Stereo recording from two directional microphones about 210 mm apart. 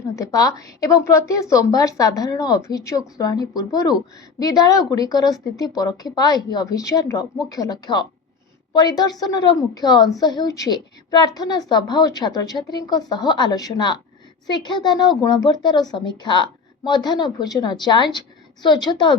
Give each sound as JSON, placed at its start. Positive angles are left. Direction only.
{"t": 0.2, "sound": "a woman's voice", "side_deg": 15}